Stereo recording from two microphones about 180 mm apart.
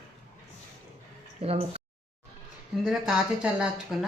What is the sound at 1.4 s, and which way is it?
Speech, 35° right (ahead or behind).